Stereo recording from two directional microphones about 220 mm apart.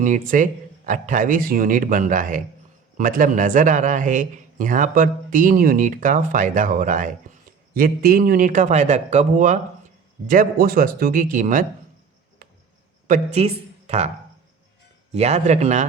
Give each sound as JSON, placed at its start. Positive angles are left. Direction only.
{"t": 0.0, "sound": "speech", "side_deg": -35}
{"t": 12.4, "sound": "cricket", "side_deg": -45}
{"t": 13.1, "sound": "speech", "side_deg": -30}
{"t": 15.1, "sound": "speech", "side_deg": -30}